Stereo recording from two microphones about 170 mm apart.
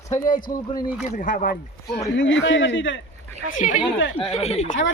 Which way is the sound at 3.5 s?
50° left (ahead or behind).